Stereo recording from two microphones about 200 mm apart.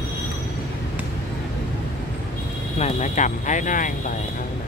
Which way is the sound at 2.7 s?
35° left (ahead or behind).